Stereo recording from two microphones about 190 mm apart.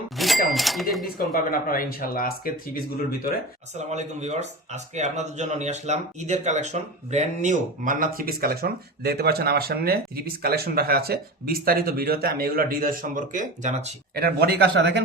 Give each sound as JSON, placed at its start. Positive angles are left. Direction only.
{"t": 0.2, "sound": "cash register", "side_deg": 0}
{"t": 0.5, "sound": "speech", "side_deg": 0}
{"t": 1.0, "sound": "speech", "side_deg": 50}
{"t": 3.8, "sound": "speech", "side_deg": -35}
{"t": 14.2, "sound": "speech", "side_deg": -55}